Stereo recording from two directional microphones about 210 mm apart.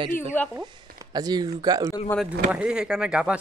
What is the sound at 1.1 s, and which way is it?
Speech, 20° right (ahead or behind).